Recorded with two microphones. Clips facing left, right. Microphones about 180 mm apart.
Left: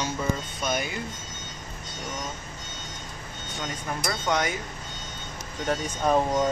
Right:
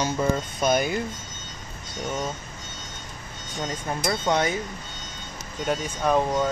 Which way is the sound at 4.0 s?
25° right (ahead or behind).